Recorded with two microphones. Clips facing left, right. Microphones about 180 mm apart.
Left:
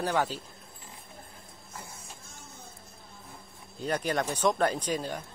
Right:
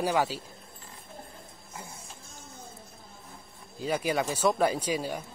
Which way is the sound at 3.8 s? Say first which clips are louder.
Right 1 dB; 5° right (ahead or behind).